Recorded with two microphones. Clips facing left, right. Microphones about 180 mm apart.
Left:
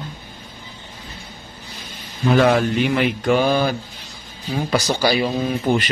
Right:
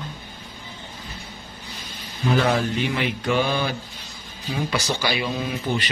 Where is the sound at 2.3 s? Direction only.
60° left (ahead or behind).